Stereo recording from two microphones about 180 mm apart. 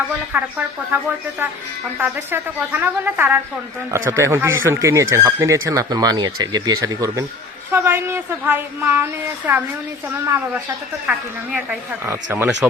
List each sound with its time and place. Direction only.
0.3 s a woman's voice: 15° right (ahead or behind)